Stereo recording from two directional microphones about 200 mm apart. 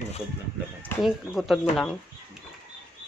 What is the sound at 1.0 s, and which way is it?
Speech, centre (ahead or behind).